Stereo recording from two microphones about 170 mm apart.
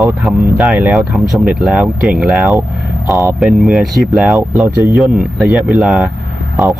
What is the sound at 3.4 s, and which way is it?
Speech, centre (ahead or behind).